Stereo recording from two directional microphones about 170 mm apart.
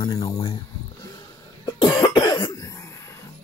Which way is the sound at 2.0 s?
25° left (ahead or behind).